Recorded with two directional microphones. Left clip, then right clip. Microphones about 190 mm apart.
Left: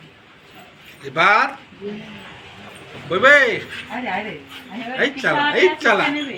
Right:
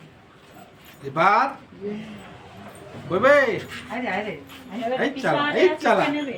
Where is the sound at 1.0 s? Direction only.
60° right (ahead or behind).